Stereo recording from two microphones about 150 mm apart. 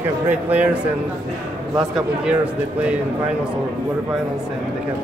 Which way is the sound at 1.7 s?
5° right (ahead or behind).